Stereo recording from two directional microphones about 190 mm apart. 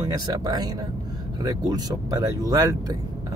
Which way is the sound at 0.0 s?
20° right (ahead or behind).